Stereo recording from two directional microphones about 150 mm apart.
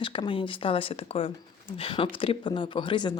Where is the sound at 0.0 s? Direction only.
35° left (ahead or behind).